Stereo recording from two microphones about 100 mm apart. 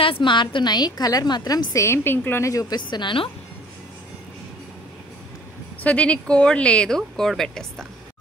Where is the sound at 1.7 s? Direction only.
25° left (ahead or behind); by 3.3 s 55° left (ahead or behind).